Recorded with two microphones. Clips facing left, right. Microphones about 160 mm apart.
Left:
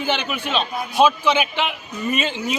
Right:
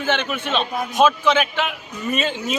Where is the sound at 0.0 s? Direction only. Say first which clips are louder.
Right 1 dB; 10° left (ahead or behind).